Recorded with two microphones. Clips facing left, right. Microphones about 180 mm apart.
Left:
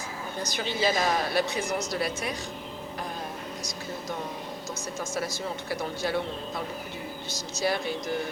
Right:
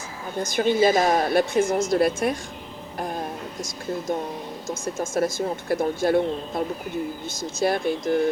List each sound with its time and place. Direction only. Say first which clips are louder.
0.4 s a woman's voice: right 9 dB; 50° right (ahead or behind)
4.7 s a woman's voice: right 8 dB; 50° right (ahead or behind)